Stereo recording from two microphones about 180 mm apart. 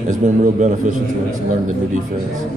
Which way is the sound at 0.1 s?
45° right (ahead or behind).